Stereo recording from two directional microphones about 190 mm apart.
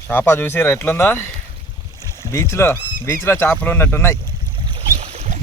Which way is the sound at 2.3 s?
15° left (ahead or behind).